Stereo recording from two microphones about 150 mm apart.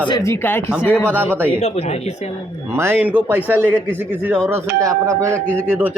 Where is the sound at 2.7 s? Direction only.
15° right (ahead or behind).